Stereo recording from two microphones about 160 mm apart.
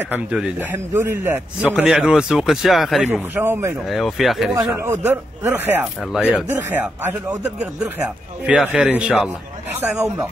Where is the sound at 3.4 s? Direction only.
15° right (ahead or behind).